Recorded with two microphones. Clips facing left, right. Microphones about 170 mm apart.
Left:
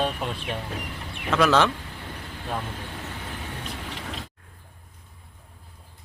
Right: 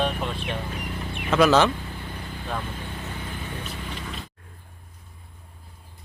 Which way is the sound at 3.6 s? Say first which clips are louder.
Right 1 dB; 85° left.